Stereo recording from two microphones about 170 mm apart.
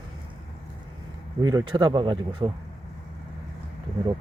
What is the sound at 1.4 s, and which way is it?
Speech, 20° right (ahead or behind).